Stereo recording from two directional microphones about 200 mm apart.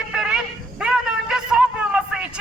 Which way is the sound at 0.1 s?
5° right (ahead or behind).